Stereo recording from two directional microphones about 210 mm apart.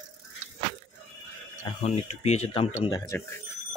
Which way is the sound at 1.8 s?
30° left (ahead or behind).